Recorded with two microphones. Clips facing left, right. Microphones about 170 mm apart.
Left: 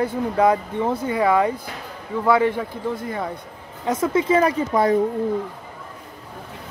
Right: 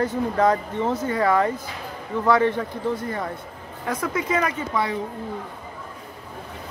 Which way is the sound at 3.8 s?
25° left (ahead or behind).